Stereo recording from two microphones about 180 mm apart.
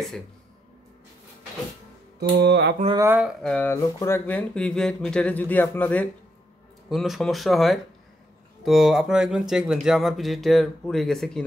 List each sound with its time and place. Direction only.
2.1 s music: 65° right (ahead or behind)
3.0 s speech: 10° right (ahead or behind)
3.4 s speech: 10° left (ahead or behind)